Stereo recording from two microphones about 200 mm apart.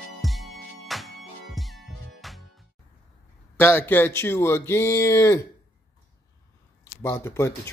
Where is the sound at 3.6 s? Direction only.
10° left (ahead or behind).